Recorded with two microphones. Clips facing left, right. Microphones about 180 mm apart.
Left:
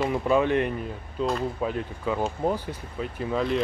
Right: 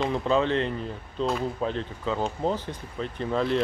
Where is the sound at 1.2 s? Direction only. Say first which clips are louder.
Even; centre (ahead or behind).